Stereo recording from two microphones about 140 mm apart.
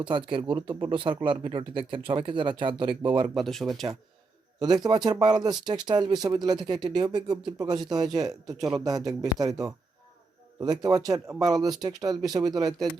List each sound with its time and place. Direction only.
0.0 s speech: 35° right (ahead or behind)
3.3 s speech: centre (ahead or behind)
4.6 s speech: 30° right (ahead or behind)